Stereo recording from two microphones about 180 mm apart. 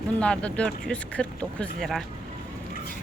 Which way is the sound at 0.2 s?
5° left (ahead or behind).